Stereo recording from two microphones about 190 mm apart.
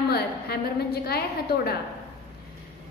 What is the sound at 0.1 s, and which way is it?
A woman's voice, 55° left (ahead or behind).